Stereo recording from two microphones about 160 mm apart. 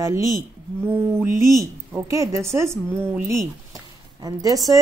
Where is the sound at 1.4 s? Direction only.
20° right (ahead or behind).